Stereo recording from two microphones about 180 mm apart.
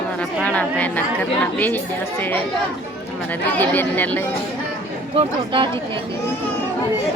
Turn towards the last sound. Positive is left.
turn(degrees=-30)  # may be behind; listen again after turning